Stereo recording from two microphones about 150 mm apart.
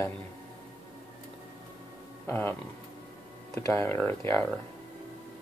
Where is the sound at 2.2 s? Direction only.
15° left (ahead or behind).